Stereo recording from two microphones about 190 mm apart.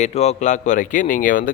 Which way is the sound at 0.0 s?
35° left (ahead or behind).